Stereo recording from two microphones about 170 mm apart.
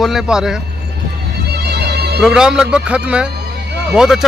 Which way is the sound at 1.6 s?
75° right (ahead or behind).